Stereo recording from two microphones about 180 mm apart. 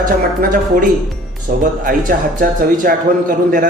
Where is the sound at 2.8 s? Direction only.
50° right (ahead or behind).